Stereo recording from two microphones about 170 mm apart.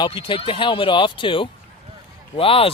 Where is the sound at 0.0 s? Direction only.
30° left (ahead or behind).